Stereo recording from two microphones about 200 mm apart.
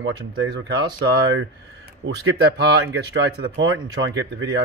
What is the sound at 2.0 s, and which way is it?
Speech, 65° right (ahead or behind).